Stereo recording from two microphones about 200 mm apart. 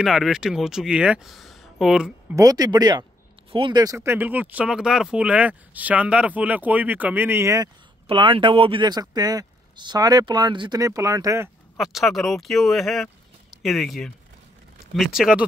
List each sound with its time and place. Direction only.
0.0 s speech: centre (ahead or behind)
2.3 s speech: 20° right (ahead or behind)
11.7 s speech: centre (ahead or behind)
15.1 s speech: 5° right (ahead or behind)